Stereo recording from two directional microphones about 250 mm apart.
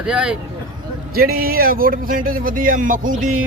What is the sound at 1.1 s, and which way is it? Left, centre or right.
Speech, right.